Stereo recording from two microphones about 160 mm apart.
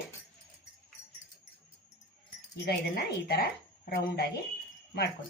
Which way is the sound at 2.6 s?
90° left.